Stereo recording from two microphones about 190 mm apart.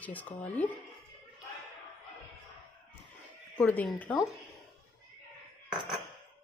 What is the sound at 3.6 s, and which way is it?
Speech, 10° left (ahead or behind).